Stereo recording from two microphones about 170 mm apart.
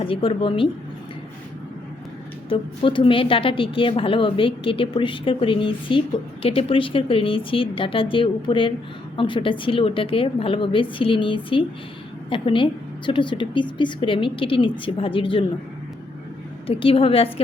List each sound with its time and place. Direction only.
0.0 s a woman's voice: 30° left (ahead or behind)
2.5 s a woman's voice: 30° left (ahead or behind)
16.6 s a woman's voice: 35° left (ahead or behind)